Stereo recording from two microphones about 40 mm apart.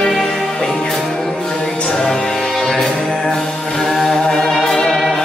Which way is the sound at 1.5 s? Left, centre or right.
Centre.